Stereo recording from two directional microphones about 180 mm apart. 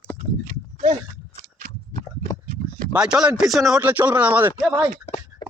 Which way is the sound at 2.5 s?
50° right (ahead or behind).